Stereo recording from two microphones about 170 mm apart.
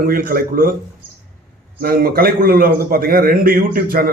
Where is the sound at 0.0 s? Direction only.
60° right (ahead or behind).